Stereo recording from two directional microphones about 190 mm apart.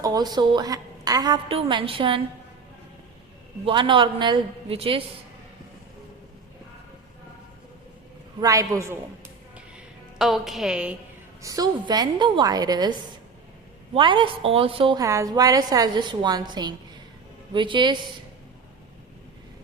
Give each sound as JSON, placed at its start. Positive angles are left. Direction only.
{"t": 0.0, "sound": "a woman's voice", "side_deg": -20}
{"t": 3.7, "sound": "a woman's voice", "side_deg": -25}
{"t": 8.4, "sound": "a man's voice", "side_deg": -20}
{"t": 10.2, "sound": "a woman's voice", "side_deg": 0}
{"t": 11.4, "sound": "a woman's voice", "side_deg": -20}
{"t": 13.9, "sound": "a woman's voice", "side_deg": -25}